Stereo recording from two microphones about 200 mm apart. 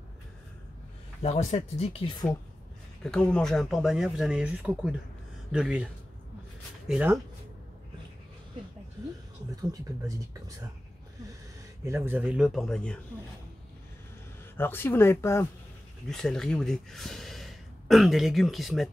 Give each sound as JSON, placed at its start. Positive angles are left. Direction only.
{"t": 1.2, "sound": "speech", "side_deg": 35}
{"t": 3.0, "sound": "speech", "side_deg": 5}
{"t": 6.9, "sound": "speech", "side_deg": -5}
{"t": 9.6, "sound": "speech", "side_deg": -20}
{"t": 11.8, "sound": "speech", "side_deg": -10}
{"t": 14.6, "sound": "speech", "side_deg": 10}